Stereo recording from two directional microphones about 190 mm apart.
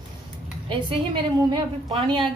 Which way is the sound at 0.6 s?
25° right (ahead or behind).